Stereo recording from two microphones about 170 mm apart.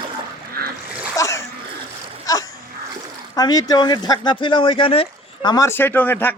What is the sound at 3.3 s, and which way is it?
Speech, 20° left (ahead or behind).